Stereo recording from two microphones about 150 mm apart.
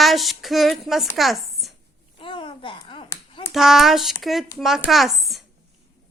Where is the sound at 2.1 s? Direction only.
35° left (ahead or behind).